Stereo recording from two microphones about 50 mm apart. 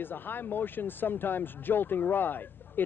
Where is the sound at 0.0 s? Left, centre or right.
Left.